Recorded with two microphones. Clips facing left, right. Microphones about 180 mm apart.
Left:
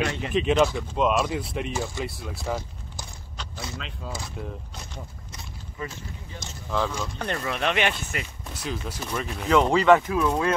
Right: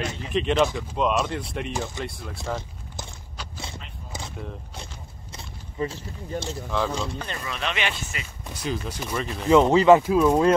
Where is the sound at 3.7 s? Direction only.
90° left.